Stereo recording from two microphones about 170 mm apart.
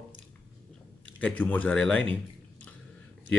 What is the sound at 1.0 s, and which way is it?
Speech, 10° left (ahead or behind).